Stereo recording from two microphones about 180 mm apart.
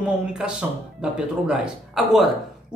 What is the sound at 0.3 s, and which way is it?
Speech, 5° right (ahead or behind).